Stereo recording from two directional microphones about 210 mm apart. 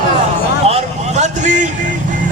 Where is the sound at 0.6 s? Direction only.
30° right (ahead or behind).